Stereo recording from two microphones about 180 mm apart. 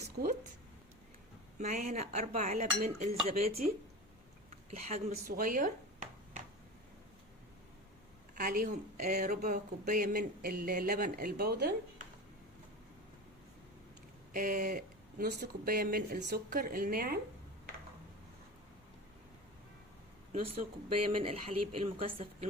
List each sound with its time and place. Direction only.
0.2 s speech: 55° right (ahead or behind)
1.5 s speech: 40° right (ahead or behind)
4.7 s speech: 35° right (ahead or behind)
5.1 s a sound: 50° right (ahead or behind)
8.4 s speech: 55° right (ahead or behind)
14.3 s speech: 45° right (ahead or behind)
21.2 s speech: 30° right (ahead or behind)